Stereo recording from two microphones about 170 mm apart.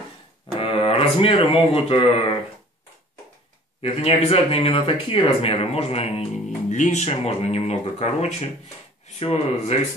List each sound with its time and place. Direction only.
0.6 s speech: 35° left (ahead or behind)
3.8 s speech: 35° left (ahead or behind)